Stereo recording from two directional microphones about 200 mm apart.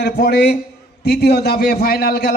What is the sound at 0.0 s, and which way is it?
A man's voice, 55° left (ahead or behind).